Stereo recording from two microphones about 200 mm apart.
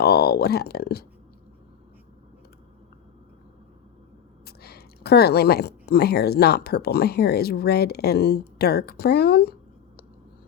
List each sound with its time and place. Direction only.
0.0 s speech: 50° left (ahead or behind)
4.4 s speech: 50° left (ahead or behind)